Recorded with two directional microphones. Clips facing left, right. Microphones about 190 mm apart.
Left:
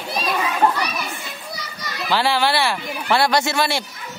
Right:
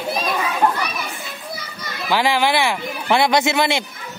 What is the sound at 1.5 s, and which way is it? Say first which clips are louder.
Children playing: right 1 dB; 55° right (ahead or behind).